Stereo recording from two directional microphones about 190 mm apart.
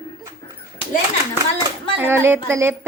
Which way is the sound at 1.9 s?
10° right (ahead or behind).